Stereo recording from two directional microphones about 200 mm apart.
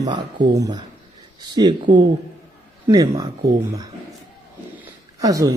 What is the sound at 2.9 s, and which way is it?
Speech, 20° right (ahead or behind).